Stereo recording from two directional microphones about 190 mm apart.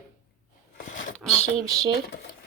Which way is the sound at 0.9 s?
45° left (ahead or behind).